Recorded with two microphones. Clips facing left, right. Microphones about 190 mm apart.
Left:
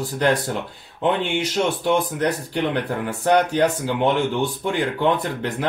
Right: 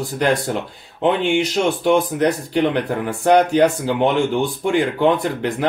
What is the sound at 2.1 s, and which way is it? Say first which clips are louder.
Speech: right 5 dB; 15° right (ahead or behind).